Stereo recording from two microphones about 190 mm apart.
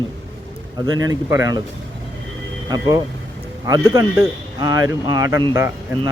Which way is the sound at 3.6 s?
15° right (ahead or behind).